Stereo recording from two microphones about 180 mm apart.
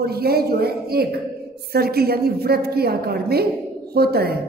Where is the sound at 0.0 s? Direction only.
60° right (ahead or behind).